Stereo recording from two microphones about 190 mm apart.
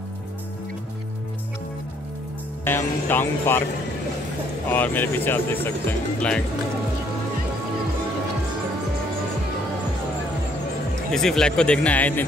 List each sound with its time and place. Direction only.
2.6 s speech: 10° left (ahead or behind)
4.6 s speech: 10° left (ahead or behind)
11.1 s speech: centre (ahead or behind)